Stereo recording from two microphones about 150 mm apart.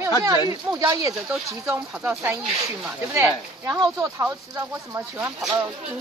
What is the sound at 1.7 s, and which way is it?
Speech, 15° right (ahead or behind).